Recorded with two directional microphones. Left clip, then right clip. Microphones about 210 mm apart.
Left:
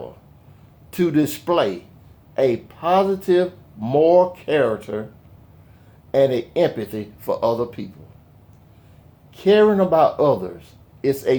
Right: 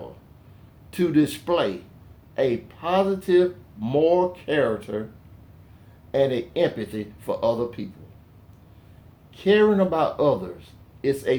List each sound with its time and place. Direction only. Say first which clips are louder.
0.9 s speech: left 2 dB; 45° left (ahead or behind)
6.1 s speech: left 5 dB; 45° left (ahead or behind)
9.3 s speech: left 4 dB; 45° left (ahead or behind)